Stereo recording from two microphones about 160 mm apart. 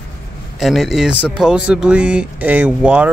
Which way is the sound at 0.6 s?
Centre (ahead or behind).